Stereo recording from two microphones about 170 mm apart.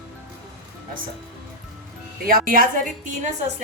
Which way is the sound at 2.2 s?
55° right (ahead or behind).